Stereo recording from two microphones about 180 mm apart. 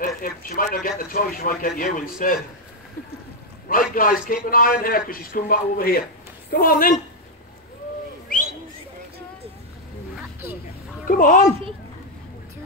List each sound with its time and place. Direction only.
0.0 s speech: 50° left (ahead or behind)
3.6 s speech: 50° left (ahead or behind)
8.3 s bird: 50° left (ahead or behind)
10.4 s a sound: 10° right (ahead or behind)
11.1 s speech: 45° left (ahead or behind)